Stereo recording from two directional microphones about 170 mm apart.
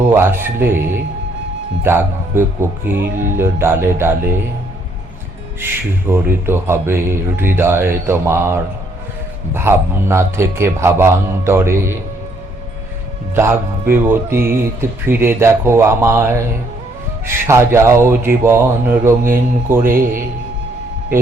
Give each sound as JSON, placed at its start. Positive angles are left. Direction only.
{"t": 0.1, "sound": "speech", "side_deg": -15}
{"t": 5.5, "sound": "speech", "side_deg": -15}
{"t": 13.3, "sound": "speech", "side_deg": -15}
{"t": 19.9, "sound": "a man's voice", "side_deg": -55}